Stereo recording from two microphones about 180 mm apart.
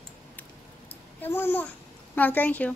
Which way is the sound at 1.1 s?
10° left (ahead or behind).